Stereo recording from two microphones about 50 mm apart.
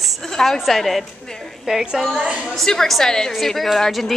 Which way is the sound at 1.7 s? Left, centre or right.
Centre.